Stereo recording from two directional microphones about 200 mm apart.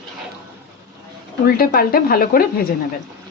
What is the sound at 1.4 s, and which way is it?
Speech, 50° left (ahead or behind).